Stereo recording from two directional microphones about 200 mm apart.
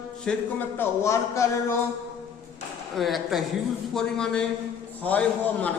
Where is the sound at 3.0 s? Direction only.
Centre (ahead or behind).